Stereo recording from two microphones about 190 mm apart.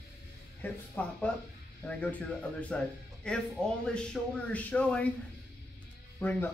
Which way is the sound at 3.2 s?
5° left (ahead or behind).